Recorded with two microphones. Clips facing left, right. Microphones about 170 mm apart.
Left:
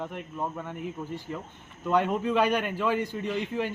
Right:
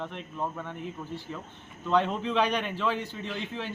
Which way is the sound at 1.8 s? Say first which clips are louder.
Left 1 dB; 10° left (ahead or behind).